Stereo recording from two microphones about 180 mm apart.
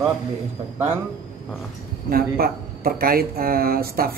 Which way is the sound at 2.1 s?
55° right (ahead or behind).